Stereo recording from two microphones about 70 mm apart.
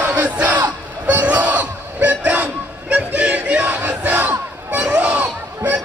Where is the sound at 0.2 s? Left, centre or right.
Right.